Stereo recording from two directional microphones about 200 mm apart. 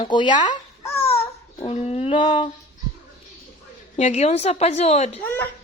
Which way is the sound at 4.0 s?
35° left (ahead or behind).